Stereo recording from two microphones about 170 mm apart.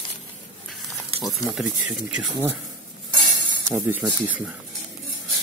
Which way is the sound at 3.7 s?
15° right (ahead or behind).